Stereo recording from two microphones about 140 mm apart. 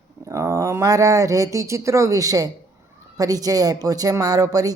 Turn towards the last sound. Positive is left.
turn(degrees=-25)  # may be behind; listen again after turning